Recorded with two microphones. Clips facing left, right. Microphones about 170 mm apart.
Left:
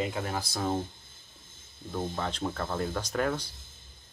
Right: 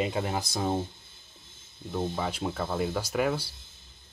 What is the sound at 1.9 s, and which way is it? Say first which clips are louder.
Speech: right 2 dB; 10° right (ahead or behind).